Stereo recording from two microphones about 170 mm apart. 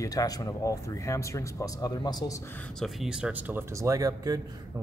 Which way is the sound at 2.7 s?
Centre (ahead or behind).